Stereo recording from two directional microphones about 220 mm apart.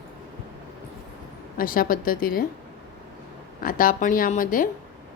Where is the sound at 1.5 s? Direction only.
40° left (ahead or behind).